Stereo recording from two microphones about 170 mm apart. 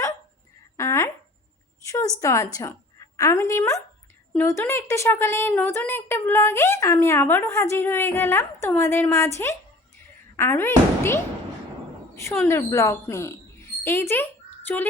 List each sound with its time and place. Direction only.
0.8 s a sound: 15° left (ahead or behind)
2.2 s a woman's voice: 20° left (ahead or behind)
12.5 s speech: 15° left (ahead or behind)